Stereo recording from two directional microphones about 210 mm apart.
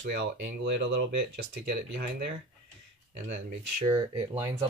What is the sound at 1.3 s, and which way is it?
Speech, 45° right (ahead or behind).